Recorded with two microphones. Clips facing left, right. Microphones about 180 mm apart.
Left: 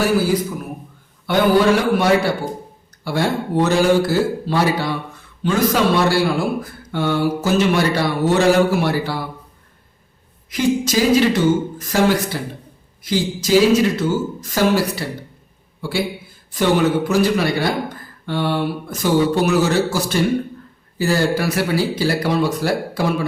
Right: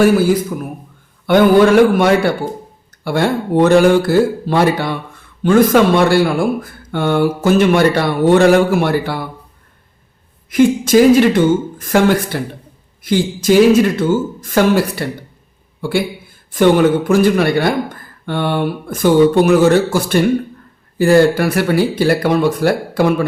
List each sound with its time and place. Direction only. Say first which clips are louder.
1.3 s speech: right 5 dB; 55° right (ahead or behind)
10.5 s a man's voice: right 7 dB; 55° right (ahead or behind)